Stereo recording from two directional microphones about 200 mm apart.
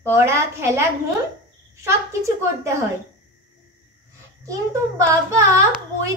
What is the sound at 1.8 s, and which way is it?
Speech, 15° right (ahead or behind).